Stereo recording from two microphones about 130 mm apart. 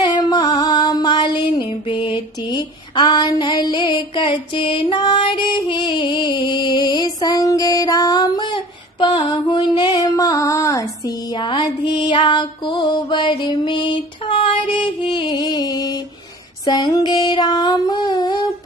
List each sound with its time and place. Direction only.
0.0 s mantra: 30° left (ahead or behind)
9.4 s female singing: 35° left (ahead or behind)
16.6 s a sound: 30° left (ahead or behind)